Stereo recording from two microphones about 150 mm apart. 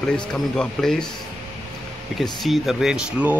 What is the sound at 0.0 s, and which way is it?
Speech, 5° left (ahead or behind).